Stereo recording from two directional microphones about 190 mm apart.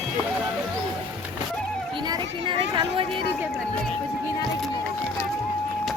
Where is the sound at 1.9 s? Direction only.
25° right (ahead or behind).